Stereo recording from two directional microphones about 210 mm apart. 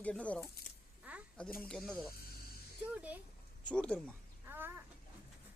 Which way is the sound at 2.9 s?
5° right (ahead or behind).